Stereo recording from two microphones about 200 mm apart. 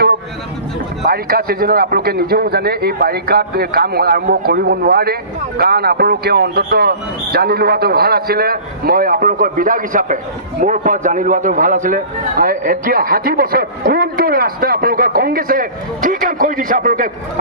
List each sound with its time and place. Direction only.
1.0 s a man's voice: 50° right (ahead or behind)